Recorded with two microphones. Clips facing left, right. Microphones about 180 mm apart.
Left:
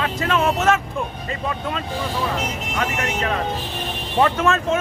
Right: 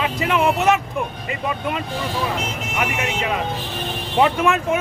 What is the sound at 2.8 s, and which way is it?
Speech, 15° right (ahead or behind).